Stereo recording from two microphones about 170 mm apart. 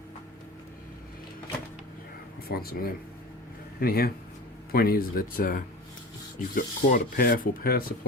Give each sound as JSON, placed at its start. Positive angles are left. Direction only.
{"t": 2.5, "sound": "rub", "side_deg": 60}